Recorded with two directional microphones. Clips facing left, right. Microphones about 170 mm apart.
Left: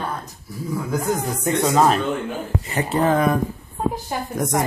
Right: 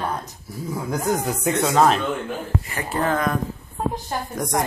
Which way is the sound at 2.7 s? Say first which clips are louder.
Left 5 dB; 20° left (ahead or behind).